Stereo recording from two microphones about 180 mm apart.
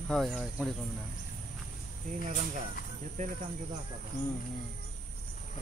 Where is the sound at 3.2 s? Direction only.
45° right (ahead or behind).